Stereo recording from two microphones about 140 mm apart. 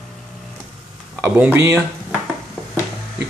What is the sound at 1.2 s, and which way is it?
Speech, 15° right (ahead or behind).